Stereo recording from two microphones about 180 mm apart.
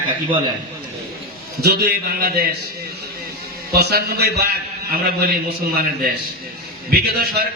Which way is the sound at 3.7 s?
60° right (ahead or behind).